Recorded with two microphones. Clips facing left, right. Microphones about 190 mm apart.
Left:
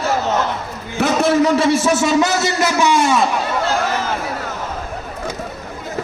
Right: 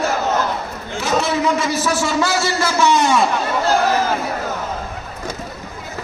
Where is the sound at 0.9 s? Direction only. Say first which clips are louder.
Left 4 dB; 55° left (ahead or behind).